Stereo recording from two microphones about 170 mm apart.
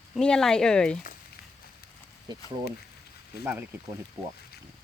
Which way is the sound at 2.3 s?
25° right (ahead or behind).